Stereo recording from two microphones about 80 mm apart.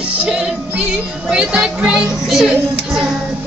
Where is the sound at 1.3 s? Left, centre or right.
Centre.